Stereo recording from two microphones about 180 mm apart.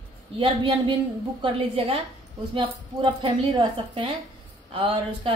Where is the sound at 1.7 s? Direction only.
30° right (ahead or behind).